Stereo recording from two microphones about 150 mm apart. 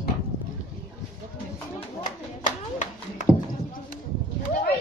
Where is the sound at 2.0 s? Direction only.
55° left (ahead or behind).